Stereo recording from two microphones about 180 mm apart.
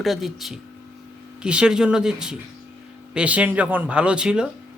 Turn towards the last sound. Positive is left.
turn(degrees=-5)  # may be behind; listen again after turning